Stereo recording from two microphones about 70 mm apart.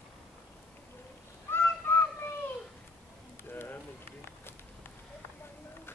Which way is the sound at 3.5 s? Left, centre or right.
Left.